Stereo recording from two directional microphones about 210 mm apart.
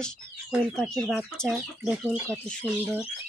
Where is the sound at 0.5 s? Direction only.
Centre (ahead or behind).